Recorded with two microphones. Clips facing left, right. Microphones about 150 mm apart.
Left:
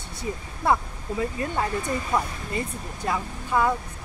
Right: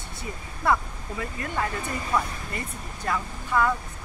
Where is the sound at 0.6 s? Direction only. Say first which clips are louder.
Left 1 dB; 25° left (ahead or behind).